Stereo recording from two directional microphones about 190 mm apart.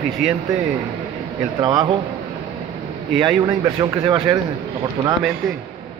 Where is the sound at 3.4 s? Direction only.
20° right (ahead or behind).